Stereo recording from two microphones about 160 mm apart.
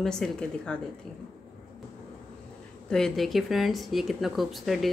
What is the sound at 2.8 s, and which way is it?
Speech, 5° left (ahead or behind).